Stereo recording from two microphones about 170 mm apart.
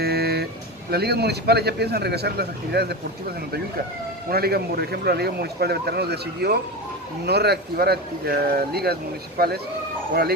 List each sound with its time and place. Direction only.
0.0 s speech: 70° right (ahead or behind)
4.3 s a man's voice: 65° right (ahead or behind)